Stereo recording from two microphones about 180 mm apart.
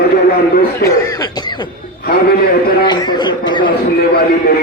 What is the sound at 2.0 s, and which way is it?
Speech, 55° left (ahead or behind).